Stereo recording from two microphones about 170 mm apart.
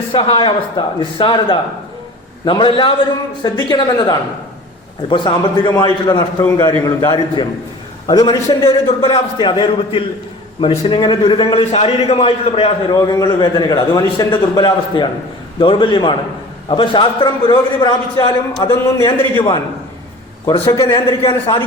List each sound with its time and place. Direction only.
0.1 s a man's voice: 30° left (ahead or behind)
12.9 s a man's voice: 25° left (ahead or behind)
19.0 s a man's voice: 30° left (ahead or behind)
20.7 s a man's voice: 20° left (ahead or behind)